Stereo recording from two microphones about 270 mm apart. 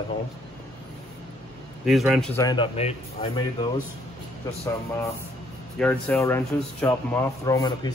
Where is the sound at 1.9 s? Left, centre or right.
Centre.